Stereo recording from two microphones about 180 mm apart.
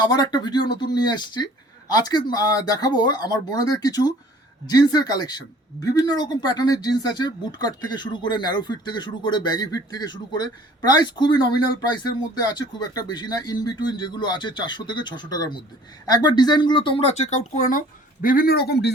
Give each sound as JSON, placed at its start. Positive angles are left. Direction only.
{"t": 0.0, "sound": "speech", "side_deg": 25}